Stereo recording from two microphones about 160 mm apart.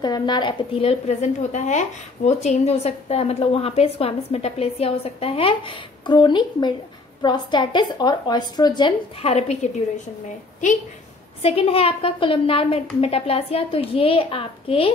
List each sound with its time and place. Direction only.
0.0 s a woman's voice: 25° left (ahead or behind); by 10.0 s 45° left (ahead or behind)
11.4 s a woman's voice: 35° left (ahead or behind)